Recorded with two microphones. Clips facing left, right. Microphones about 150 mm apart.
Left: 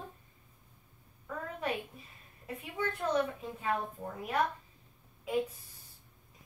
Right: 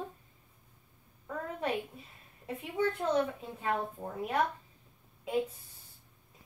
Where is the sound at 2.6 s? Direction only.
30° right (ahead or behind).